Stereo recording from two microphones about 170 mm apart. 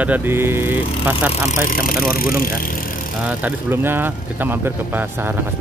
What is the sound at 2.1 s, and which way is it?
Speech, 60° left (ahead or behind).